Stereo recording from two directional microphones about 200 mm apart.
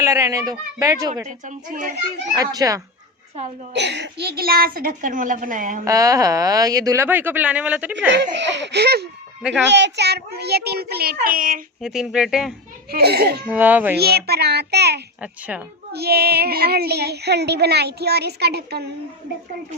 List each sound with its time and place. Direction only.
0.0 s speech: 15° right (ahead or behind)
1.5 s a child's voice: 40° right (ahead or behind)
2.3 s speech: 20° right (ahead or behind)
3.8 s speech: 60° right (ahead or behind); by 5.8 s 40° right (ahead or behind)
5.8 s speech: 15° right (ahead or behind)
8.4 s laughter: 60° right (ahead or behind)
9.6 s speech: 60° right (ahead or behind); by 11.6 s 45° right (ahead or behind)
11.8 s speech: centre (ahead or behind)
12.9 s speech: 50° right (ahead or behind)
13.5 s speech: 10° right (ahead or behind)
13.9 s speech: 55° right (ahead or behind)
15.2 s speech: 5° right (ahead or behind)
15.9 s speech: 50° right (ahead or behind)